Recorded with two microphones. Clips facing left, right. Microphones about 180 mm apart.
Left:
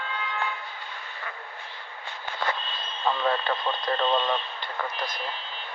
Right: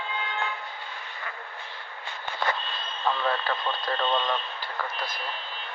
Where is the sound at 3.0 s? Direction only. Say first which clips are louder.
Left 2 dB; 5° left (ahead or behind).